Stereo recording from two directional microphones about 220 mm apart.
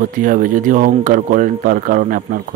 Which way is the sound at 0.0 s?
35° right (ahead or behind).